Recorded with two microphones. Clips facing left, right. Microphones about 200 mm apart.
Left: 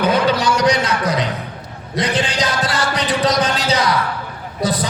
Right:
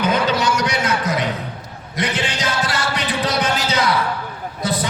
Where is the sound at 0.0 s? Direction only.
35° left (ahead or behind).